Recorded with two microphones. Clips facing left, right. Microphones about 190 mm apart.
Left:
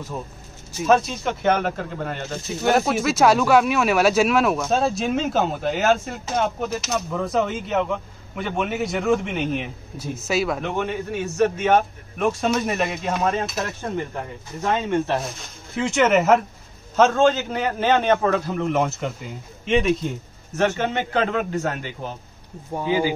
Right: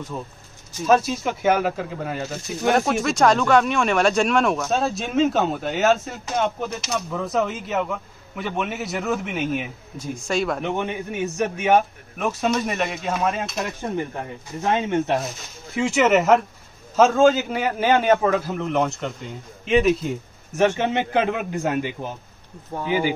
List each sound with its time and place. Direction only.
0.8 s speech: 5° right (ahead or behind)
10.6 s a man's voice: 20° right (ahead or behind); by 13.7 s centre (ahead or behind)
14.6 s speech: 20° right (ahead or behind)
15.7 s a man's voice: centre (ahead or behind)